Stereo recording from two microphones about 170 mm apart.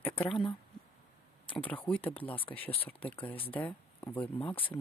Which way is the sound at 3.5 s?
10° left (ahead or behind).